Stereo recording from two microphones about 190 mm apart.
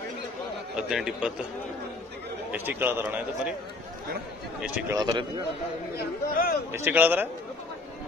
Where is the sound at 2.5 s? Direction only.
10° right (ahead or behind).